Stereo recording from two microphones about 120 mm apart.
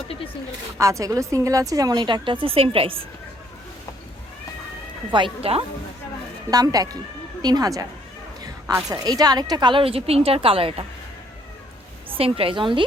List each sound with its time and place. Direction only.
0.8 s a woman's voice: 25° right (ahead or behind); by 3.1 s 50° right (ahead or behind)
5.1 s a woman's voice: 50° right (ahead or behind)
6.5 s a woman's voice: 30° right (ahead or behind)
8.9 s a woman's voice: 30° right (ahead or behind); by 10.8 s 50° right (ahead or behind)
12.1 s a woman's voice: 50° right (ahead or behind)